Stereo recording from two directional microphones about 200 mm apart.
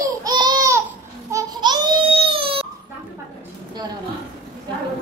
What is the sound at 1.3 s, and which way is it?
Babbling, 20° right (ahead or behind).